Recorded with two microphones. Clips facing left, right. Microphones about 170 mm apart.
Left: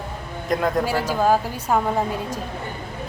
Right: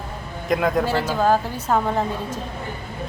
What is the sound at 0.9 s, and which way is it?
A woman's voice, 10° left (ahead or behind).